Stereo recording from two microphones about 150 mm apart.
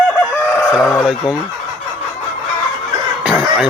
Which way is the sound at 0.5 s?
15° left (ahead or behind).